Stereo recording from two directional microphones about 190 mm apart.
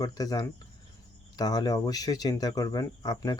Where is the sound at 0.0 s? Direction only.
20° left (ahead or behind).